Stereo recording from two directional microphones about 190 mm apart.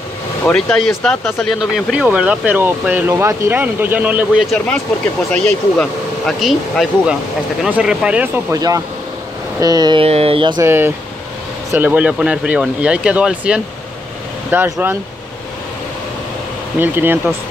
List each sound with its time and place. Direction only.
0.5 s speech: 5° left (ahead or behind)
8.5 s mantra: 20° right (ahead or behind)
10.6 s speech: 10° right (ahead or behind)
16.8 s speech: 10° right (ahead or behind)